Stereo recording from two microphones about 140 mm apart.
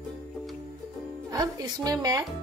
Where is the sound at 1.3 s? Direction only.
25° right (ahead or behind).